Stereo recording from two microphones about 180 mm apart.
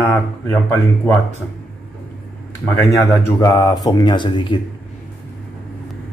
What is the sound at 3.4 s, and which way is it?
Speech, 25° left (ahead or behind).